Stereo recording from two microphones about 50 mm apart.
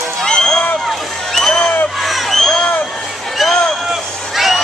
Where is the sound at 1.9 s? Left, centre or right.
Centre.